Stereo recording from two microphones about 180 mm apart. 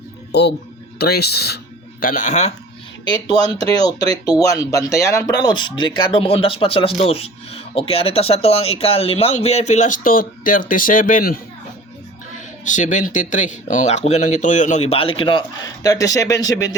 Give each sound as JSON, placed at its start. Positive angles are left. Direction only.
{"t": 0.3, "sound": "speech", "side_deg": 70}
{"t": 3.4, "sound": "speech", "side_deg": 20}
{"t": 12.6, "sound": "speech", "side_deg": 45}